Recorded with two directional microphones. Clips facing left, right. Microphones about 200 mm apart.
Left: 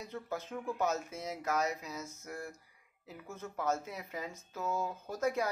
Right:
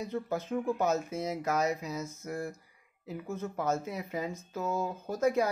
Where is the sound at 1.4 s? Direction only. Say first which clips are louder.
Right 2 dB; 15° right (ahead or behind).